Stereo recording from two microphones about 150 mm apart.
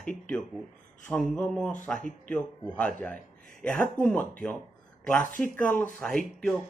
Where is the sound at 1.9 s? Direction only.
60° left (ahead or behind).